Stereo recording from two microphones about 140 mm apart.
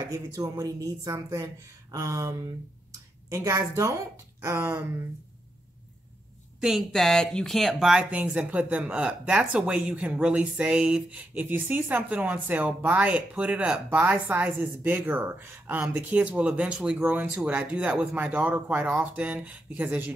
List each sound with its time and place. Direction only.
0.1 s speech: 25° right (ahead or behind)
6.6 s speech: centre (ahead or behind)